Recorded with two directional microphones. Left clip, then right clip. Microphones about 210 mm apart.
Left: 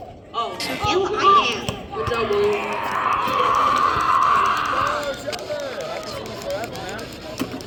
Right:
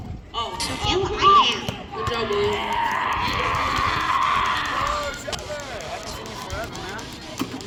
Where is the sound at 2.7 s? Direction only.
20° right (ahead or behind).